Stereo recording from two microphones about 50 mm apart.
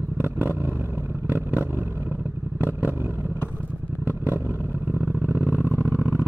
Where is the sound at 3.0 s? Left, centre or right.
Right.